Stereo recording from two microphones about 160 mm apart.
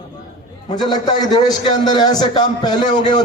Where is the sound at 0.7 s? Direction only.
25° left (ahead or behind).